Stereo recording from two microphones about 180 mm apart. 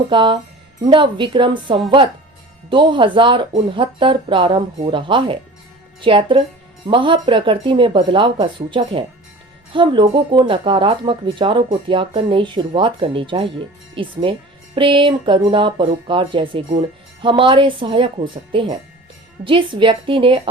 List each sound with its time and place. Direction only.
0.1 s speech: 25° right (ahead or behind)